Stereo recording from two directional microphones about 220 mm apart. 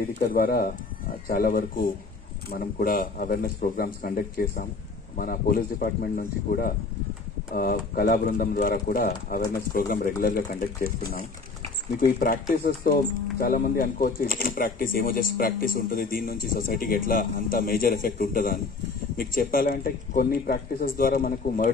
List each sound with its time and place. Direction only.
0.3 s speech: 40° left (ahead or behind)
12.0 s speech: 40° left (ahead or behind)